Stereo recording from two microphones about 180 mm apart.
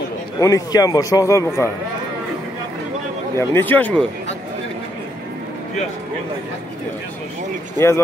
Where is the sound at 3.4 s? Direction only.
10° left (ahead or behind).